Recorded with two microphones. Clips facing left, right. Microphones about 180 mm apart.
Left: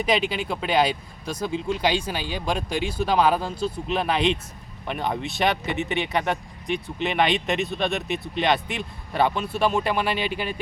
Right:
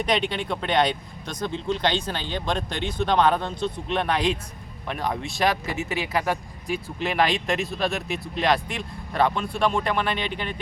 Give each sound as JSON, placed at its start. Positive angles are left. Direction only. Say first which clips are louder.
{"t": 0.0, "sound": "speech", "louder": "left 1 dB", "side_deg": 5}